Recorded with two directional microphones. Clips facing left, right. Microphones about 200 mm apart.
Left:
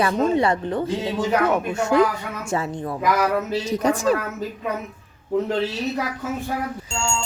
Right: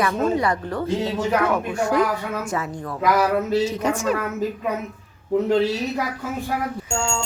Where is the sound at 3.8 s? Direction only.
35° left (ahead or behind).